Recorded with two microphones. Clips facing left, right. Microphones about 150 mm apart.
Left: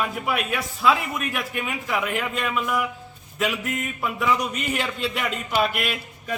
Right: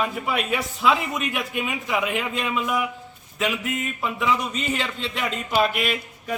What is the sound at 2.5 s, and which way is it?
Speech, 5° right (ahead or behind).